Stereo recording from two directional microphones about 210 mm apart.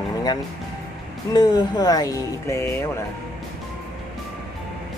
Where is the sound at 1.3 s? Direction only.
15° left (ahead or behind).